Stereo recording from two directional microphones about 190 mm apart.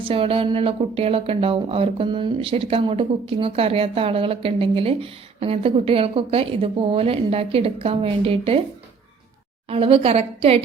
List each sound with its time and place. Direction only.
0.0 s speech: 30° right (ahead or behind)
9.6 s a woman's voice: 30° right (ahead or behind)